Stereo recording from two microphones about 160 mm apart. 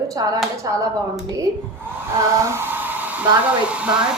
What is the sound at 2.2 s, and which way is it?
Speech, 15° right (ahead or behind).